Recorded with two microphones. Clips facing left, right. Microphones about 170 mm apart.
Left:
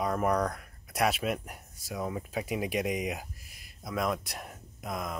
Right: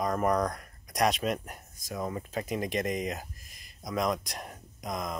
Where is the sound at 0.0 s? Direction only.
5° left (ahead or behind).